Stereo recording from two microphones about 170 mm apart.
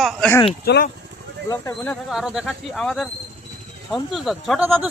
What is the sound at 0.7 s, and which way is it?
Speech, 70° left (ahead or behind).